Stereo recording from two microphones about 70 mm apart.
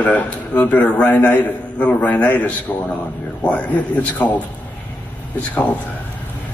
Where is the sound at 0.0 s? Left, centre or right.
Left.